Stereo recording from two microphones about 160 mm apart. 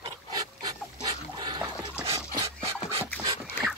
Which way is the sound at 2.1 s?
35° right (ahead or behind).